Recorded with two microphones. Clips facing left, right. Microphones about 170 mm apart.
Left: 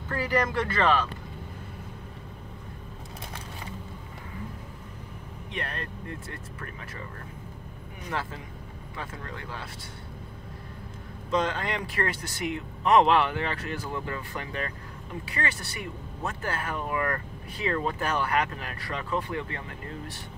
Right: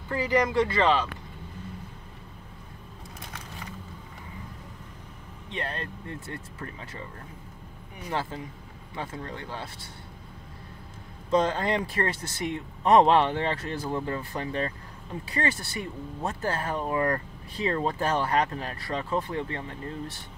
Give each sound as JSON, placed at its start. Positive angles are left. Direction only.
{"t": 0.1, "sound": "speech", "side_deg": -15}
{"t": 5.5, "sound": "speech", "side_deg": -30}
{"t": 8.1, "sound": "speech", "side_deg": -30}
{"t": 11.3, "sound": "speech", "side_deg": -35}